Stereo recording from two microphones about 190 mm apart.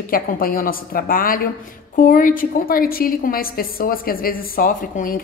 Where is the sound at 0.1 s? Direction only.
50° left (ahead or behind).